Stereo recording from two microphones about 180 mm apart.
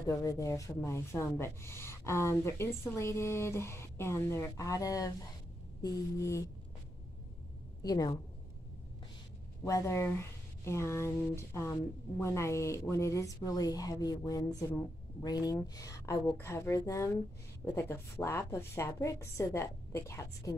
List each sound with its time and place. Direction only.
0.0 s speech: 20° left (ahead or behind)
7.8 s a woman's voice: 20° left (ahead or behind)
9.6 s speech: 15° left (ahead or behind)